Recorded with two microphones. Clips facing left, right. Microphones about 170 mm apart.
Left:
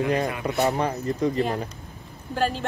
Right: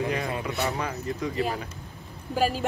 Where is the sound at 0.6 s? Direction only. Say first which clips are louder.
Left 9 dB; 35° left (ahead or behind).